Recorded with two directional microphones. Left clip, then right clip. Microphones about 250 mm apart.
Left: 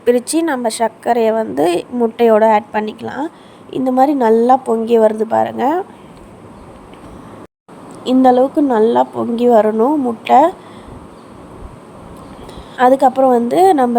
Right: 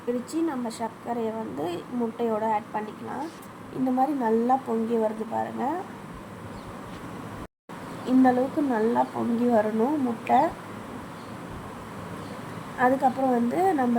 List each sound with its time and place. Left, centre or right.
0.1 s a woman's voice: left
3.9 s a woman's voice: left
8.0 s a woman's voice: left
12.8 s a woman's voice: left